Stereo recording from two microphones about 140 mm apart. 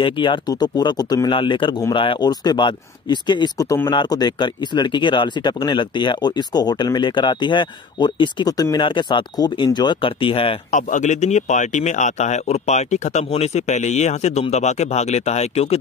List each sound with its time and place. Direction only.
0.0 s speech: 35° left (ahead or behind)
10.7 s speech: 60° left (ahead or behind)